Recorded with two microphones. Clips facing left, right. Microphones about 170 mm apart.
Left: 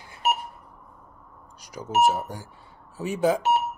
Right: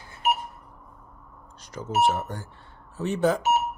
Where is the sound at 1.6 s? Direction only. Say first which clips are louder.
Left 2 dB; 10° left (ahead or behind).